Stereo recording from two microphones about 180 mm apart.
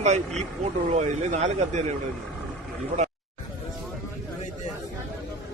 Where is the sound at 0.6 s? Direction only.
40° right (ahead or behind).